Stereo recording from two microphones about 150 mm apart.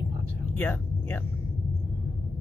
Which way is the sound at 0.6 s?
10° left (ahead or behind).